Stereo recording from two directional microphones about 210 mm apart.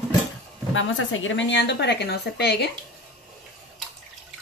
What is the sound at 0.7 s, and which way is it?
A woman's voice, 70° left (ahead or behind).